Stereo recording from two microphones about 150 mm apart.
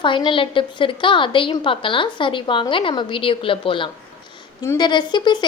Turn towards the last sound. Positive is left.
turn(degrees=30)  # may be behind; listen again after turning